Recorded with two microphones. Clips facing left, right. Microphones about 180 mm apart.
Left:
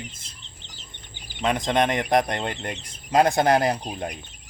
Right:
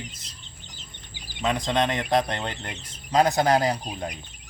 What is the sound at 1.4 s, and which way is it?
Speech, 20° left (ahead or behind).